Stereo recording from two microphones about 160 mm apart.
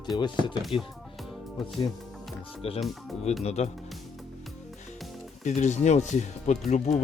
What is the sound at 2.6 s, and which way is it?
Speech, 40° left (ahead or behind).